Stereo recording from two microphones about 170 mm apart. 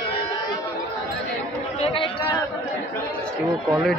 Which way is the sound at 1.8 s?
30° left (ahead or behind).